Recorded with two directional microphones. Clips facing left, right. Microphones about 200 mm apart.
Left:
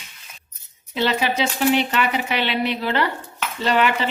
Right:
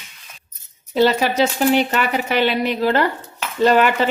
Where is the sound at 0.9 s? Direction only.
40° right (ahead or behind).